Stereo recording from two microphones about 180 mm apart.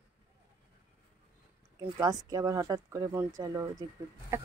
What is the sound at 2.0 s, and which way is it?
Speech, 20° right (ahead or behind).